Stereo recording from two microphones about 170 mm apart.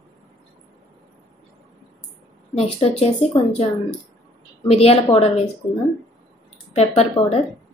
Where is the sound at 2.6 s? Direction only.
35° left (ahead or behind).